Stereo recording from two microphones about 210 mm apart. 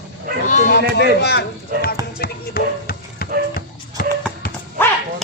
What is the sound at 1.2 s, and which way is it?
Speech, 50° left (ahead or behind).